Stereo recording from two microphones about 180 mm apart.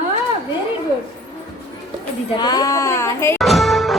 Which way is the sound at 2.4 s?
20° left (ahead or behind).